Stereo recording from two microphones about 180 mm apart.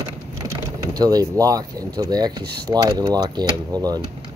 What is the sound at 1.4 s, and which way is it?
Speech, 20° right (ahead or behind).